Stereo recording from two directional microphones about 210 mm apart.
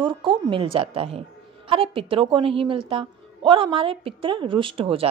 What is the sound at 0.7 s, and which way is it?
A woman's voice, 25° right (ahead or behind).